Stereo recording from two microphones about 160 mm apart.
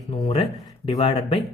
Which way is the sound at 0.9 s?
35° left (ahead or behind).